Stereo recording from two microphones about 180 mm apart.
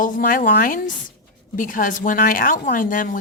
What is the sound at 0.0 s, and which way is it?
Speech, 50° left (ahead or behind).